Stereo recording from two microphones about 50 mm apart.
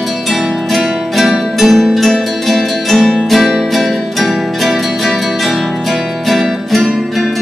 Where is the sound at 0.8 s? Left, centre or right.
Centre.